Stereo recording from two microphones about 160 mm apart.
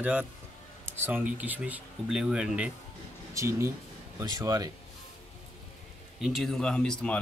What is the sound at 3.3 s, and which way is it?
Speech, 20° right (ahead or behind).